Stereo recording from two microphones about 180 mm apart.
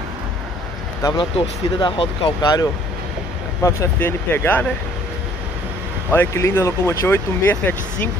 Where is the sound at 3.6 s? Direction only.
15° left (ahead or behind).